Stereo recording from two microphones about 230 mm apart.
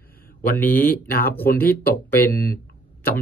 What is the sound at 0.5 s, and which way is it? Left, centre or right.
Speech, centre.